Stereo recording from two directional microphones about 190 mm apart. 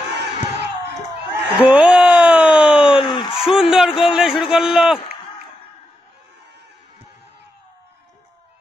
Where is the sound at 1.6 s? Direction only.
5° right (ahead or behind).